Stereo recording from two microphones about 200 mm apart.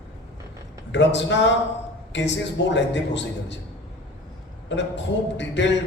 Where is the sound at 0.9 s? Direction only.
65° left (ahead or behind).